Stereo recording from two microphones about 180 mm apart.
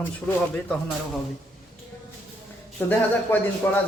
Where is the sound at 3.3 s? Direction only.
10° left (ahead or behind).